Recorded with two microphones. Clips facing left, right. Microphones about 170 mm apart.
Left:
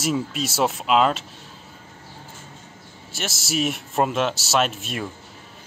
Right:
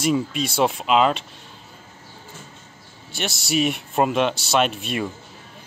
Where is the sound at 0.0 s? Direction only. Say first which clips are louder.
Right 3 dB; 5° left (ahead or behind).